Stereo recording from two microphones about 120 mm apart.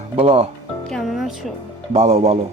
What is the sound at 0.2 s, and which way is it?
Speech, 55° right (ahead or behind).